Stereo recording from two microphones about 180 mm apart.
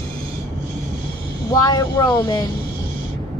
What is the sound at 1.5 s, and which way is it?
Speech, 20° left (ahead or behind).